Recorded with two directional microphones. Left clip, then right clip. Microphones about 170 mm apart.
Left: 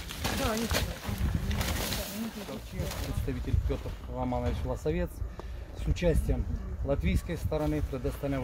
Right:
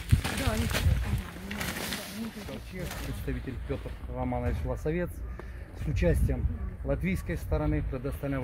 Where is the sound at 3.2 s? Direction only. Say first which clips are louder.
Even; centre (ahead or behind).